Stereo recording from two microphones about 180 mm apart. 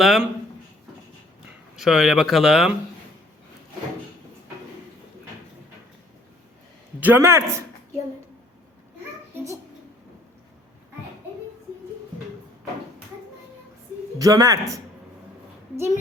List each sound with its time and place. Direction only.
0.0 s speech: centre (ahead or behind)
1.7 s speech: centre (ahead or behind)
7.0 s a man's voice: 10° right (ahead or behind)
9.3 s a child's voice: 15° right (ahead or behind)
14.2 s speech: 20° right (ahead or behind)